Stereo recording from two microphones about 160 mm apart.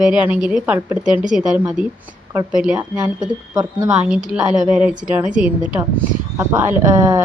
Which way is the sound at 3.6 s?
25° right (ahead or behind).